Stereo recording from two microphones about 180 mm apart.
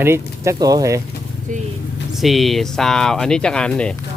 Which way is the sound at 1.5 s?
45° right (ahead or behind).